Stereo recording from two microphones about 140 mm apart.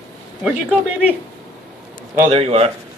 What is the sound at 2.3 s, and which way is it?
Speech, 45° right (ahead or behind).